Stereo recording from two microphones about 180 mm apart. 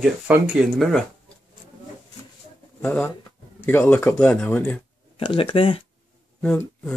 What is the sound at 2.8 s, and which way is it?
Speech, 10° left (ahead or behind).